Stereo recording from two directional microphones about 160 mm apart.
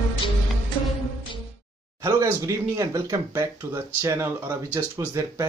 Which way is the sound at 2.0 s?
20° right (ahead or behind).